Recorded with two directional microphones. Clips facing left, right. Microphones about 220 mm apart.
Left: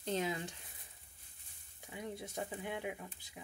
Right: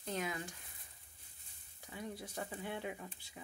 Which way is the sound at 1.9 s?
20° left (ahead or behind).